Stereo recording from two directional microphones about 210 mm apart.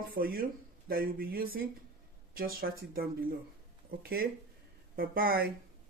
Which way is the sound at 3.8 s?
45° right (ahead or behind).